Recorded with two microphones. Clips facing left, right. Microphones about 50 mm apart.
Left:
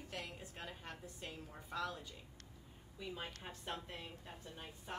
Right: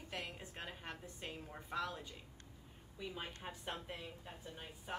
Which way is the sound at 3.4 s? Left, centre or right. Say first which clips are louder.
Right 1 dB; centre.